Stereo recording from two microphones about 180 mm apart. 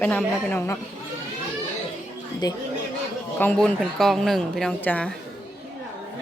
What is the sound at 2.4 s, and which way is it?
Speech, 20° left (ahead or behind).